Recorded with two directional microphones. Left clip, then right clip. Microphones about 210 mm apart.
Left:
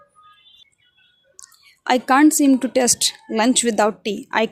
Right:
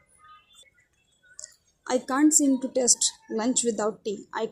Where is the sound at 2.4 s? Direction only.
50° left (ahead or behind).